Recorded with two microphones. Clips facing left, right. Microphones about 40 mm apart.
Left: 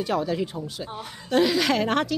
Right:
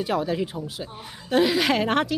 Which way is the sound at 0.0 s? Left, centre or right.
Centre.